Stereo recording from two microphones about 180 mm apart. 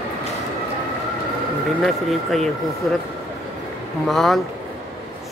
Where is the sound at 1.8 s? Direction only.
Centre (ahead or behind).